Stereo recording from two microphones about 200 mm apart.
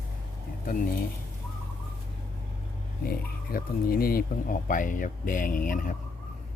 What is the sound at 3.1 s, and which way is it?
Speech, 45° left (ahead or behind).